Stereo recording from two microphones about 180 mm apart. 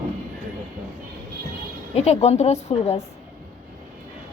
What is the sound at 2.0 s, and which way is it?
A woman's voice, 35° left (ahead or behind).